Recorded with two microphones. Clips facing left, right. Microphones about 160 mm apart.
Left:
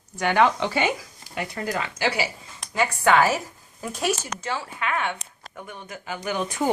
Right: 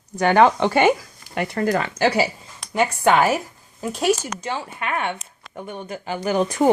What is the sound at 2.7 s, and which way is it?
Speech, 20° right (ahead or behind).